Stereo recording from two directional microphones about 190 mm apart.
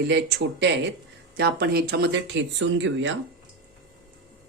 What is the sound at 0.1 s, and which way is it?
Speech, 65° right (ahead or behind).